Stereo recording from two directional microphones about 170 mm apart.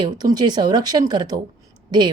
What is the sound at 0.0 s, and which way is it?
A woman's voice, 25° right (ahead or behind).